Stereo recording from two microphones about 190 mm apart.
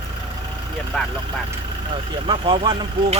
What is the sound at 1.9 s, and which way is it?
Speech, 25° right (ahead or behind).